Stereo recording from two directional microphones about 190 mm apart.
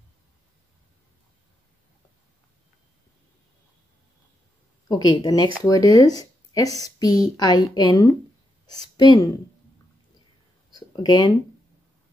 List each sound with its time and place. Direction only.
4.8 s speech: 20° left (ahead or behind)
11.0 s speech: 20° left (ahead or behind)